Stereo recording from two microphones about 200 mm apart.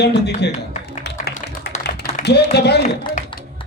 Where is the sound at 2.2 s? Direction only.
55° left (ahead or behind).